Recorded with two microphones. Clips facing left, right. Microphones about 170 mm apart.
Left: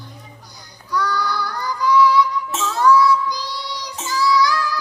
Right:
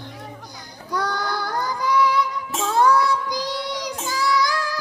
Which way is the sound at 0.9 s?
50° right (ahead or behind).